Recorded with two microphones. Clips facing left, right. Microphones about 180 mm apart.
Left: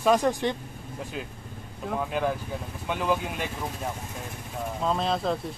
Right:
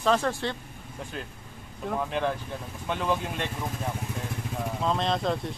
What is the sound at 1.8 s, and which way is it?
Speech, 5° left (ahead or behind).